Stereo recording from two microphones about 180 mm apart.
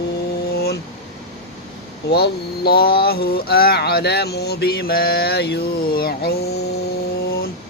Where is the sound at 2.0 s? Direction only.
65° left (ahead or behind).